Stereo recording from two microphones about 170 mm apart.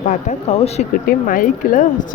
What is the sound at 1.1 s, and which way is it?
Speech, 55° left (ahead or behind).